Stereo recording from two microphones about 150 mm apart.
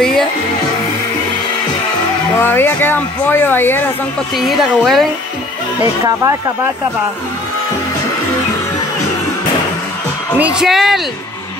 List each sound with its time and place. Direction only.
0.0 s music: centre (ahead or behind)
2.3 s speech: 15° left (ahead or behind)
4.4 s speech: centre (ahead or behind)
6.0 s speech: 20° right (ahead or behind)
10.4 s speech: 5° right (ahead or behind)